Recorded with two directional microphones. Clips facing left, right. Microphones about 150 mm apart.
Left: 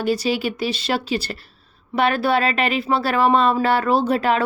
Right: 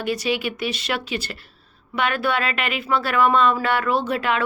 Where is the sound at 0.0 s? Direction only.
35° left (ahead or behind).